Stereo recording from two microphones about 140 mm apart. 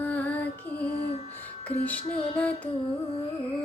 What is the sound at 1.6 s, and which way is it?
Female singing, 10° left (ahead or behind).